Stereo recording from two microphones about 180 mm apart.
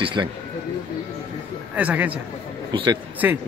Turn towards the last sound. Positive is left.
turn(degrees=-10)  # may be behind; listen again after turning